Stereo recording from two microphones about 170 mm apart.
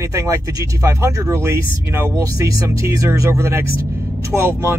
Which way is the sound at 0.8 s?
15° right (ahead or behind).